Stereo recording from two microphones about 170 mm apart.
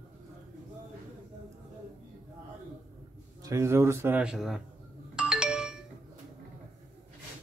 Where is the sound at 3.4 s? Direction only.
15° right (ahead or behind).